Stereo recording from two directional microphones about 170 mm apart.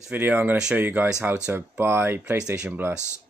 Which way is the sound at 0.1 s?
10° right (ahead or behind).